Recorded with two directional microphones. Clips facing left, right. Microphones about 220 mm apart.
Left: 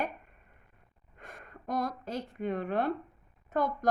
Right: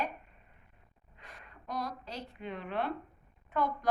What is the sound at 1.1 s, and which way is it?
A woman's voice, 50° left (ahead or behind).